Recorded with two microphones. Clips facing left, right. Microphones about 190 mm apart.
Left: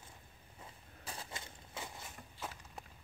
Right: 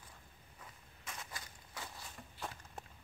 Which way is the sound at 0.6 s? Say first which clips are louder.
Left 3 dB; 30° left (ahead or behind).